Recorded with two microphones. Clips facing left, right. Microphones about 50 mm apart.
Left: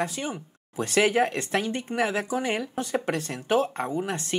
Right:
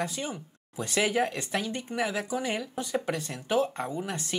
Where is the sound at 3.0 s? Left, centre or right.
Left.